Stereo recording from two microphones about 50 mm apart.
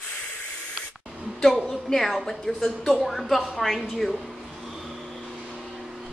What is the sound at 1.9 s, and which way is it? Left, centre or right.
A woman's voice, centre.